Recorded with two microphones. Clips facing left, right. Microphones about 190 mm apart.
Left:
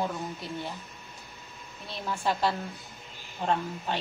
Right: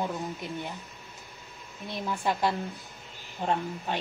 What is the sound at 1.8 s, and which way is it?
A woman's voice, 15° right (ahead or behind).